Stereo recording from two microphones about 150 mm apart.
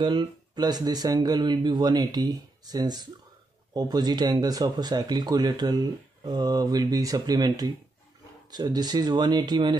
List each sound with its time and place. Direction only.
0.0 s speech: 30° right (ahead or behind)